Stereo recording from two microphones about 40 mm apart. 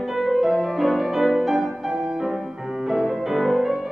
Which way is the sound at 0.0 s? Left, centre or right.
Centre.